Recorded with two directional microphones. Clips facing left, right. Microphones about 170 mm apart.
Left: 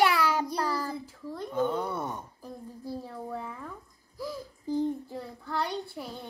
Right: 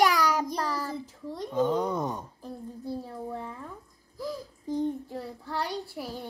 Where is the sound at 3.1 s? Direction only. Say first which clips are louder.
Right 1 dB; 20° right (ahead or behind).